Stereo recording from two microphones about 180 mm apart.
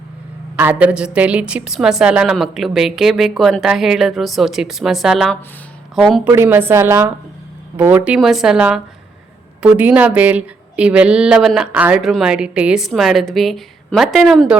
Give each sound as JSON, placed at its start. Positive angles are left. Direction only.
{"t": 0.5, "sound": "a woman's voice", "side_deg": -10}
{"t": 6.2, "sound": "a woman's voice", "side_deg": -15}